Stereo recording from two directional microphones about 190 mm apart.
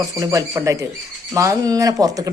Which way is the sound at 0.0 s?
20° right (ahead or behind).